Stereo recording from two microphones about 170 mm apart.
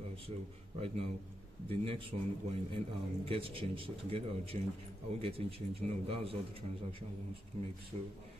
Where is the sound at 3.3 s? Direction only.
35° right (ahead or behind).